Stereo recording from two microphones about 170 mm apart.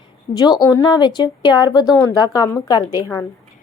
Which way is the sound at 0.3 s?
20° left (ahead or behind).